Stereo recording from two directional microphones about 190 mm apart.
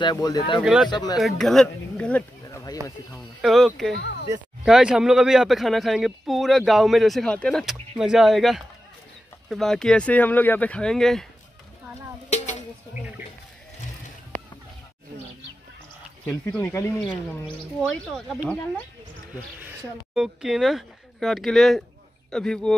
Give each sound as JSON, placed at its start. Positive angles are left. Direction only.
{"t": 0.0, "sound": "speech", "side_deg": 20}
{"t": 1.1, "sound": "speech", "side_deg": 0}
{"t": 2.4, "sound": "a sound", "side_deg": 15}
{"t": 3.3, "sound": "speech", "side_deg": 0}
{"t": 4.0, "sound": "speech", "side_deg": 65}
{"t": 4.6, "sound": "speech", "side_deg": -5}
{"t": 12.3, "sound": "a sound", "side_deg": 35}
{"t": 16.3, "sound": "speech", "side_deg": 10}
{"t": 19.3, "sound": "speech", "side_deg": -10}